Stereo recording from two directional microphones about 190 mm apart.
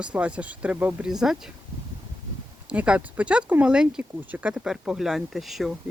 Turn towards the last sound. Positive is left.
turn(degrees=0)  # may be behind; listen again after turning